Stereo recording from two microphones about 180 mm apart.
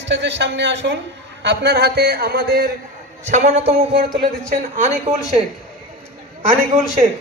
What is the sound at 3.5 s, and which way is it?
Speech, 35° right (ahead or behind).